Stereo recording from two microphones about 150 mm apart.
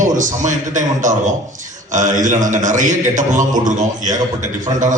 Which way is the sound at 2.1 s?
55° right (ahead or behind).